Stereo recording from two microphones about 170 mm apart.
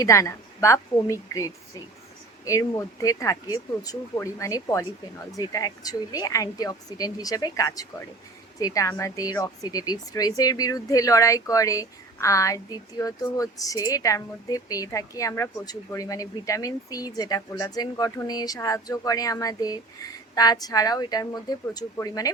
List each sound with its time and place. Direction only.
0.0 s speech: 20° left (ahead or behind)